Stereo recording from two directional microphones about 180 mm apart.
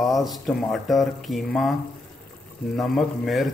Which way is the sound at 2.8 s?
Centre (ahead or behind).